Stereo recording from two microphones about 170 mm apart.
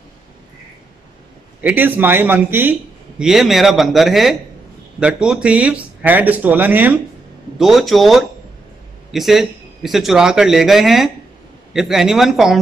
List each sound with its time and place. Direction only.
1.6 s a man's voice: 10° right (ahead or behind)